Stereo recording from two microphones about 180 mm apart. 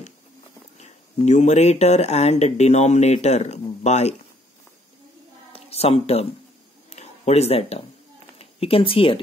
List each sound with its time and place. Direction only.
0.7 s speech: 40° left (ahead or behind)
5.5 s a sound: 35° left (ahead or behind)
8.4 s speech: 30° left (ahead or behind)